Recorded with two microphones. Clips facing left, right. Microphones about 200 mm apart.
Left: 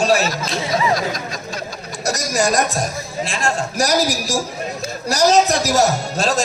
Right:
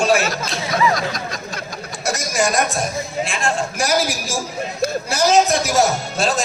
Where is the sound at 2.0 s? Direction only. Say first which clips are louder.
Left 1 dB; 40° left (ahead or behind).